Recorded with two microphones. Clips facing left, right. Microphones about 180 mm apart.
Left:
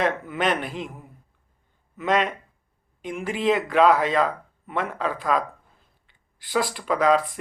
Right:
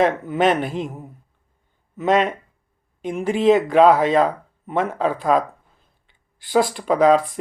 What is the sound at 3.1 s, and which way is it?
Speech, 45° right (ahead or behind).